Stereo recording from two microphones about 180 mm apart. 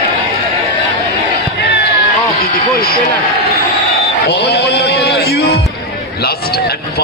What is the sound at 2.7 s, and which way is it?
Speech, 55° left (ahead or behind).